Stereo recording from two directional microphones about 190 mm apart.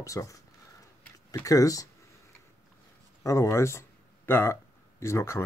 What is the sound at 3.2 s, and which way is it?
Speech, 15° left (ahead or behind).